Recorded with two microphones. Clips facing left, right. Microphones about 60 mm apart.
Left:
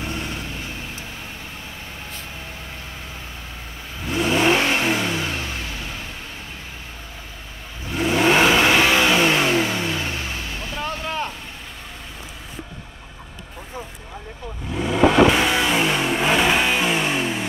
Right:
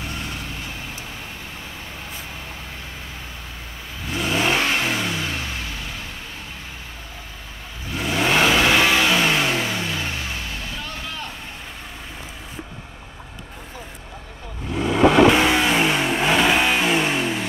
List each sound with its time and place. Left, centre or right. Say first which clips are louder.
4.1 s vehicle: left 3 dB; centre
7.9 s vehicle: left 3 dB; centre
10.8 s vehicle: left 6 dB; left
14.7 s vehicle: right 1 dB; centre
15.5 s vehicle: right 1 dB; centre